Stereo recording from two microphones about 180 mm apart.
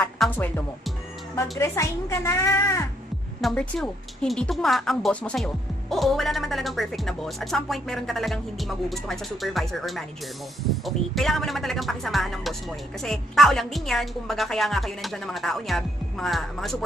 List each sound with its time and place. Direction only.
0.0 s speech: 10° left (ahead or behind)
3.3 s a woman's voice: centre (ahead or behind)
11.1 s a woman's voice: centre (ahead or behind)